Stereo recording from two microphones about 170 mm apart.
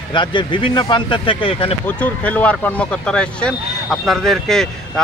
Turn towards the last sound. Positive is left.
turn(degrees=0)  # may be behind; listen again after turning